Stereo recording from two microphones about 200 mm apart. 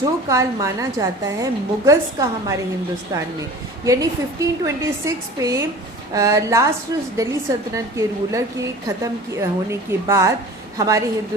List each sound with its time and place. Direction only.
0.3 s a woman's voice: 15° right (ahead or behind)
3.8 s a woman's voice: 15° right (ahead or behind)